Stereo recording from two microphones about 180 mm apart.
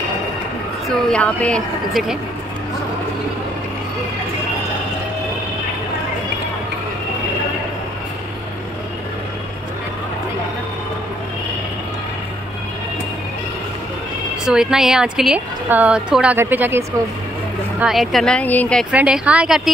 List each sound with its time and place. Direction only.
0.8 s a woman's voice: 5° left (ahead or behind)
14.4 s a woman's voice: 5° right (ahead or behind)
18.9 s a woman's voice: 5° right (ahead or behind)